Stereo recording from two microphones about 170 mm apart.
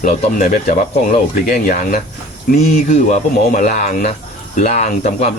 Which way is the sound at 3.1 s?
50° left (ahead or behind).